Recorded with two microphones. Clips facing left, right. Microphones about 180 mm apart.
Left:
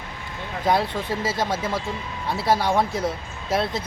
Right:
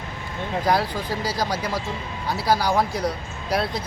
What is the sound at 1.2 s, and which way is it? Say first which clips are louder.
Speech: left 1 dB; 25° left (ahead or behind).